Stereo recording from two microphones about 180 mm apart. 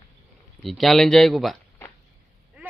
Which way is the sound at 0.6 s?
Centre (ahead or behind).